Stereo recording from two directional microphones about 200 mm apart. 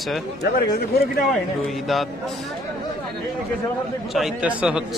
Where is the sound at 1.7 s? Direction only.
Centre (ahead or behind).